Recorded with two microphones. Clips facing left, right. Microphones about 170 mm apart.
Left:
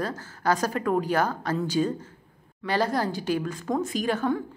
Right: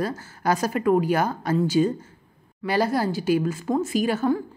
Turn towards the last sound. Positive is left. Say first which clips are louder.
# right 4 dB
turn(degrees=-5)  # may be behind; listen again after turning